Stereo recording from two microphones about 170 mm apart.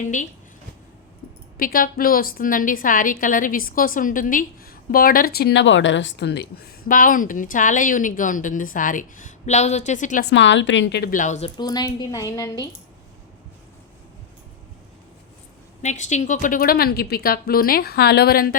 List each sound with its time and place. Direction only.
0.0 s a woman's voice: 45° left (ahead or behind)
1.5 s a woman's voice: 55° left (ahead or behind)
10.2 s a woman's voice: 90° left
11.1 s a woman's voice: 45° left (ahead or behind)
11.5 s speech: 25° left (ahead or behind)
15.8 s a woman's voice: 45° left (ahead or behind); by 18.5 s 60° left (ahead or behind)